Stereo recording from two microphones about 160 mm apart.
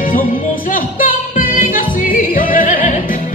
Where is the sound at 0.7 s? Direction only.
55° left (ahead or behind).